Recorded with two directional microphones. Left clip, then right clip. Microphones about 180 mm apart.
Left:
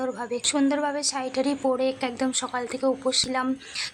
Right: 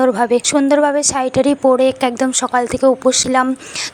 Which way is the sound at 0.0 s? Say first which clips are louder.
Right 14 dB; 40° right (ahead or behind).